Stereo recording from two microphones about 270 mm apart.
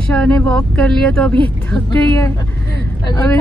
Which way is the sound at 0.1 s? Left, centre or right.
Centre.